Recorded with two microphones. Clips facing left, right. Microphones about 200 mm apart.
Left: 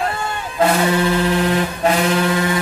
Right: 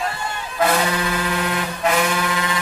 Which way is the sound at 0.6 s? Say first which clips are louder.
Left 4 dB; 30° left (ahead or behind).